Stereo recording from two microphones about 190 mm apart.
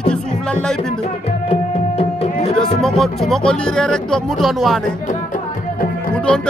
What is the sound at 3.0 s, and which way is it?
Speech, centre (ahead or behind).